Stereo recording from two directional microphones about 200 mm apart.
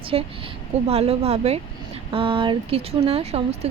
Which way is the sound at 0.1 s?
25° right (ahead or behind).